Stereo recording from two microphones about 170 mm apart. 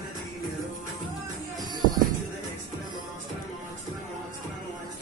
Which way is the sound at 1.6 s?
25° right (ahead or behind).